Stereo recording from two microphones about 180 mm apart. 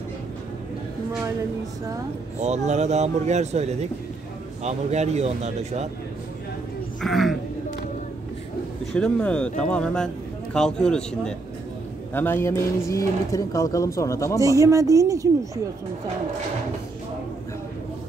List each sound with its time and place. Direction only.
2.3 s speech: 40° right (ahead or behind)
7.0 s a sound: centre (ahead or behind)
8.9 s speech: 5° left (ahead or behind)
14.4 s a woman's voice: 20° right (ahead or behind)